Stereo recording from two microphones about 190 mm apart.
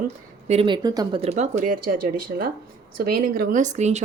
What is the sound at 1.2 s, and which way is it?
Speech, 35° right (ahead or behind).